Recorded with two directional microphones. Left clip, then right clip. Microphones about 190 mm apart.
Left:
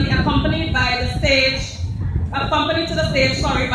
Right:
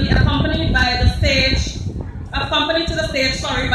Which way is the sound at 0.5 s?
30° right (ahead or behind).